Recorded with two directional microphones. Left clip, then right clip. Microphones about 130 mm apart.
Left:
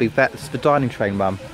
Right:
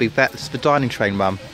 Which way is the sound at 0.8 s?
15° right (ahead or behind).